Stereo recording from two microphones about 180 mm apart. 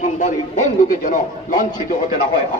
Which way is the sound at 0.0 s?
45° left (ahead or behind).